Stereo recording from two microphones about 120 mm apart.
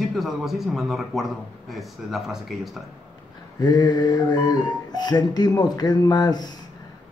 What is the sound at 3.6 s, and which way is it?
Music, 35° left (ahead or behind).